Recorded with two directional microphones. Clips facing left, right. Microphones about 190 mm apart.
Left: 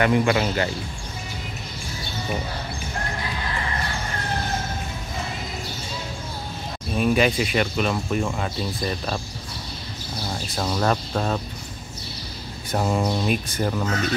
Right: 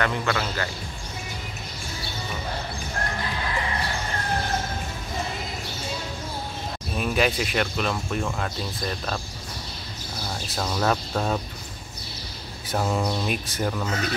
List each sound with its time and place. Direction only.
0.0 s a man's voice: 15° left (ahead or behind)
7.0 s speech: centre (ahead or behind)
10.5 s speech: 5° left (ahead or behind)
12.7 s speech: 10° left (ahead or behind)